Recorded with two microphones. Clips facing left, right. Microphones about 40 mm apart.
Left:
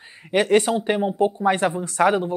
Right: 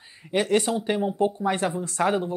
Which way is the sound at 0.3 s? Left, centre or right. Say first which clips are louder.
Left 5 dB; left.